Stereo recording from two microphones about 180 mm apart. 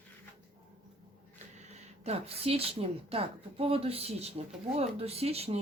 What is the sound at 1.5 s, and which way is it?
A woman's voice, 40° right (ahead or behind).